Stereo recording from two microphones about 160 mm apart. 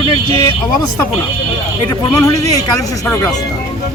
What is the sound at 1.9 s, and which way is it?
Speech, 20° left (ahead or behind).